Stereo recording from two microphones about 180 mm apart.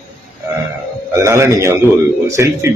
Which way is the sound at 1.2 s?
15° right (ahead or behind).